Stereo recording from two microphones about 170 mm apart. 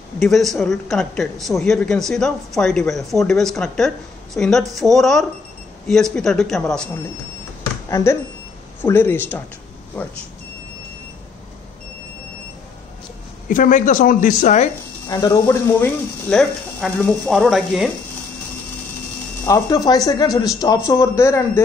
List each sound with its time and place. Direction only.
0.2 s speech: centre (ahead or behind)
7.9 s speech: 15° left (ahead or behind)
13.5 s speech: 50° left (ahead or behind)
15.0 s speech: 20° left (ahead or behind); by 17.9 s centre (ahead or behind)
19.4 s speech: 20° left (ahead or behind)